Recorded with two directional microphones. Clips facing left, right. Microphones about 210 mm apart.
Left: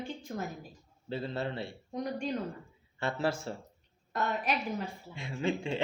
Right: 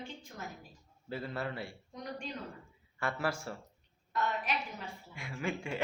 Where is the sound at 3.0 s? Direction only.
25° left (ahead or behind).